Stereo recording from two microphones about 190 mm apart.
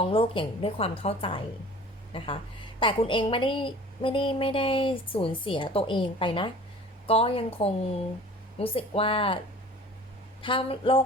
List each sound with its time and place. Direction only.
0.0 s a woman's voice: 30° left (ahead or behind)
10.4 s a woman's voice: 25° left (ahead or behind)